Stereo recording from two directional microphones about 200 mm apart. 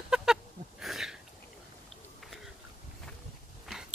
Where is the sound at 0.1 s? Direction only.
5° right (ahead or behind).